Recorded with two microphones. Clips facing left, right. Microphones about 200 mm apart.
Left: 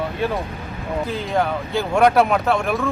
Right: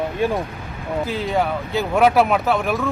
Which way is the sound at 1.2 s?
Centre (ahead or behind).